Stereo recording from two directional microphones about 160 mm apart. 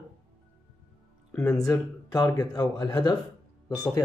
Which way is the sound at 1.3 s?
15° left (ahead or behind).